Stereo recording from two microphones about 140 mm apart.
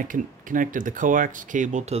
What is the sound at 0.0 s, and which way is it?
Speech, 70° right (ahead or behind).